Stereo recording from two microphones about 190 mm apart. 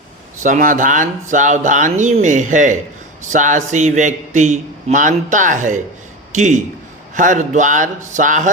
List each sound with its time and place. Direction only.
0.4 s a man's voice: 45° right (ahead or behind)